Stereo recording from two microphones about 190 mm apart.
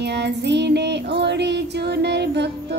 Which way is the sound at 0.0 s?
65° right (ahead or behind).